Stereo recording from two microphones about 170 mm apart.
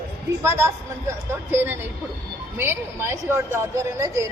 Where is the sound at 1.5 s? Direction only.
10° right (ahead or behind).